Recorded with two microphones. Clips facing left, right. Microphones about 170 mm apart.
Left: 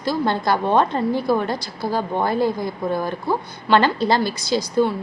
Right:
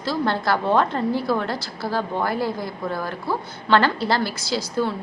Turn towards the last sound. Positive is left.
turn(degrees=20)  # may be behind; listen again after turning